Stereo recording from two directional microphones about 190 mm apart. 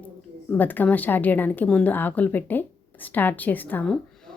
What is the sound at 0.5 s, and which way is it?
A woman's voice, 10° left (ahead or behind).